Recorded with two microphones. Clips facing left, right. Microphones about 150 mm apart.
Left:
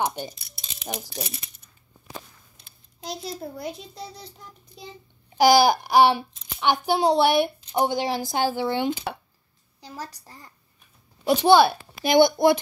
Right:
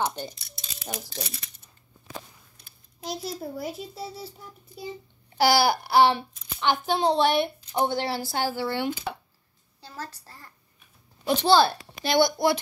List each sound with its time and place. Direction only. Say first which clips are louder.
0.0 s speech: left 2 dB; 15° left (ahead or behind)
3.0 s a child's voice: even; centre (ahead or behind)
5.4 s speech: left 4 dB; 15° left (ahead or behind)
9.8 s a sound: left 2 dB; 15° left (ahead or behind)
11.2 s a child's voice: left 3 dB; 15° left (ahead or behind)